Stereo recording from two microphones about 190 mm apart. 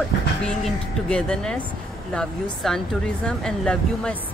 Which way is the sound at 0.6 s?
5° left (ahead or behind).